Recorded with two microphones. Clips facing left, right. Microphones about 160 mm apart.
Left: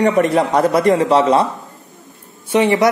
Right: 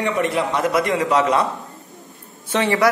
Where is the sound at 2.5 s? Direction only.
15° left (ahead or behind).